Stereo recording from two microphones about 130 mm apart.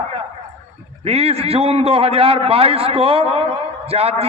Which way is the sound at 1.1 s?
50° right (ahead or behind).